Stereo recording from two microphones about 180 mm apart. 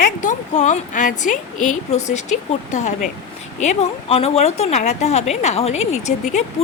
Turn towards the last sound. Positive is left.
turn(degrees=40)  # may be behind; listen again after turning